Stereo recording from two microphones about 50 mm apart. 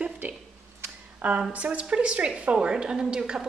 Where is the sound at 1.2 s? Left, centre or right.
Right.